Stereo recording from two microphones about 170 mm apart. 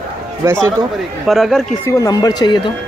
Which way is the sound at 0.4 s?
20° right (ahead or behind).